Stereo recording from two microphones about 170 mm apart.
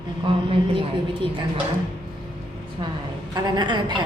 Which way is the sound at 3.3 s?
25° right (ahead or behind).